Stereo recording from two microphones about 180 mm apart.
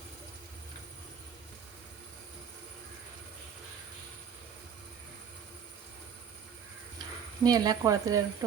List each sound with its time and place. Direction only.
7.4 s speech: 20° right (ahead or behind)